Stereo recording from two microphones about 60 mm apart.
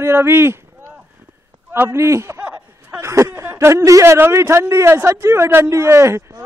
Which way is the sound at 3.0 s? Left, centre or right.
Right.